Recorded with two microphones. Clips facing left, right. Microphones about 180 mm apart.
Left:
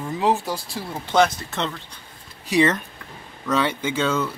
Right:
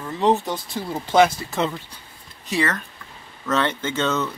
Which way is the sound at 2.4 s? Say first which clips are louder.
Left 5 dB; 15° left (ahead or behind).